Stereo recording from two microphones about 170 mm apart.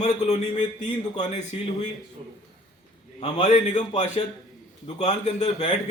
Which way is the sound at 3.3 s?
45° left (ahead or behind).